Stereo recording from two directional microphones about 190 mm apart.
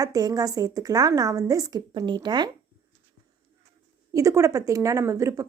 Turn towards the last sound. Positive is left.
turn(degrees=-15)  # may be behind; listen again after turning